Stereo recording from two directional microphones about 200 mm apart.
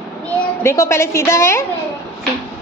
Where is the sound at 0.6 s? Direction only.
15° left (ahead or behind).